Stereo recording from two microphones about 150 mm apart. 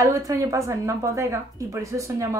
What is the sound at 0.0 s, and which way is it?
Speech, 20° right (ahead or behind).